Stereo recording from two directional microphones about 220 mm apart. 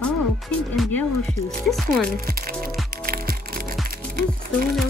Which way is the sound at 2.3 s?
40° right (ahead or behind).